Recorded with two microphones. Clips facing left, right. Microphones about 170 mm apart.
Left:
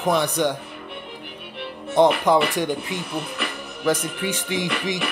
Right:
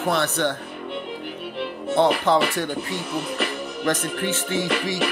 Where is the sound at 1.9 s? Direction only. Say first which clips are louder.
Left 2 dB; 15° left (ahead or behind).